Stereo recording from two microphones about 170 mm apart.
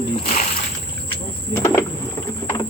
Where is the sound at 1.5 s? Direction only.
15° left (ahead or behind).